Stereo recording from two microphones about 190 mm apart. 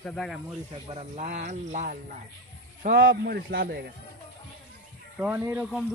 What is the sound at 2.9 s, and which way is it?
Speech, 50° right (ahead or behind).